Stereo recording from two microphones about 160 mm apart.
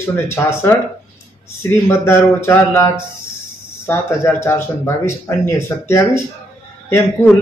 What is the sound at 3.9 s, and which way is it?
A man's voice, 15° left (ahead or behind).